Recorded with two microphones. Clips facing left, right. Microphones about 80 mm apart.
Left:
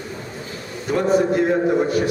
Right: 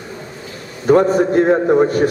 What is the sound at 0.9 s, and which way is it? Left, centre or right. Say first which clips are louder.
A man's voice: right 6 dB; right.